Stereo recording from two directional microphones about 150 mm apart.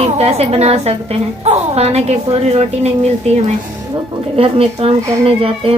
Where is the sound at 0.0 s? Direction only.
45° right (ahead or behind).